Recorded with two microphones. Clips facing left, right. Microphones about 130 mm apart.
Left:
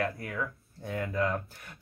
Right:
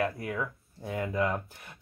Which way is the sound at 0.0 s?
15° right (ahead or behind).